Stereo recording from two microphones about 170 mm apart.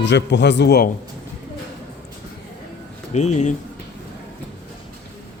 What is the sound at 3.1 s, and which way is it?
Speech, 45° left (ahead or behind).